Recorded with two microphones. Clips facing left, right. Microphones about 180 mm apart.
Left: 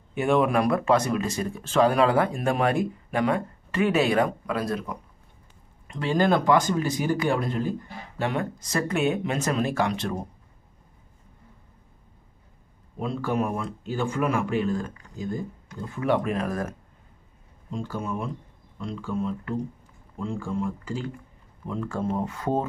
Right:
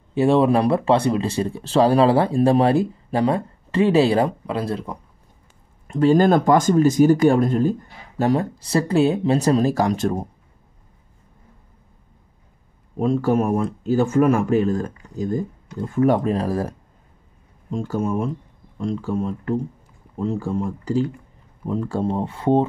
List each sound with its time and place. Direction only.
0.1 s speech: 30° right (ahead or behind)
5.9 s speech: 45° right (ahead or behind)
13.0 s speech: 45° right (ahead or behind)
17.6 s speech: 45° right (ahead or behind); by 22.7 s 30° right (ahead or behind)